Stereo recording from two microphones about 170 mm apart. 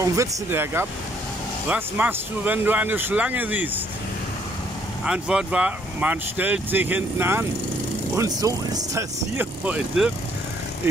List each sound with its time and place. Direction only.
0.1 s speech: 15° right (ahead or behind)
5.0 s speech: 5° right (ahead or behind)